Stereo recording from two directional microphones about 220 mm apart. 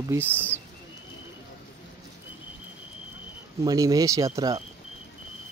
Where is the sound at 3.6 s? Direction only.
15° right (ahead or behind).